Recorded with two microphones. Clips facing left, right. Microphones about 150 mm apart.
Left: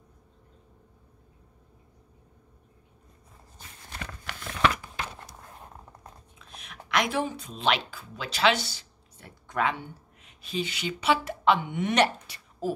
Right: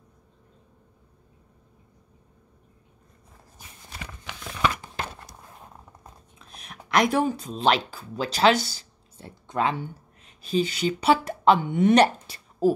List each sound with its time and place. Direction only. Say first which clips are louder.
3.5 s dog: left 1 dB; 10° right (ahead or behind)
4.3 s a sound: even; centre (ahead or behind)
6.3 s dog: right 2 dB; 40° right (ahead or behind)
6.9 s speech: right 6 dB; 40° right (ahead or behind)